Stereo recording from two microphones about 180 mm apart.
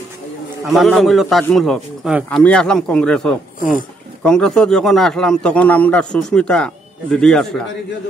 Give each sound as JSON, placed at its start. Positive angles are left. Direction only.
{"t": 0.7, "sound": "a man's voice", "side_deg": 0}
{"t": 3.5, "sound": "speech", "side_deg": 50}
{"t": 4.2, "sound": "a man's voice", "side_deg": 5}